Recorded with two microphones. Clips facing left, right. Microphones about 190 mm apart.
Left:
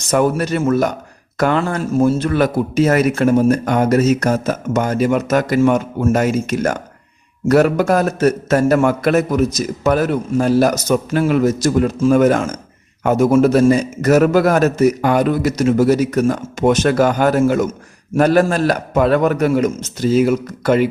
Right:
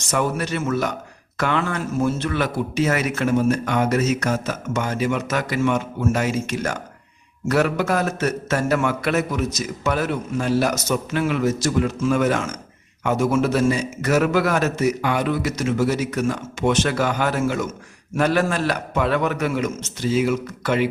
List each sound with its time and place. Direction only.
0.1 s a man's voice: 40° left (ahead or behind)